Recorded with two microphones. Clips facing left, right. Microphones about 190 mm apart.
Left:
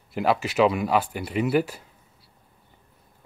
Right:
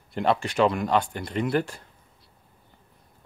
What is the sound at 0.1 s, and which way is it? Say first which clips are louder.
Speech: left 1 dB; 5° left (ahead or behind).